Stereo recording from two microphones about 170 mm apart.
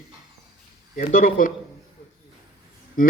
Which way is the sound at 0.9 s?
55° left (ahead or behind).